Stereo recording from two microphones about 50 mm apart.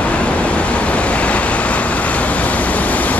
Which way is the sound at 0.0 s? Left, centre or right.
Left.